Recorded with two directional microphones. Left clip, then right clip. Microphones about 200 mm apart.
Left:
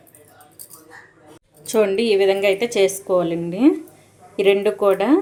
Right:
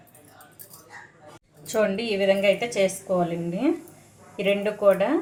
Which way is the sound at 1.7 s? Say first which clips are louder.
Left 7 dB; 50° left (ahead or behind).